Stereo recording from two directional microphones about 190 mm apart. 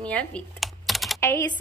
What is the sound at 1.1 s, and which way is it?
Speech, 15° left (ahead or behind).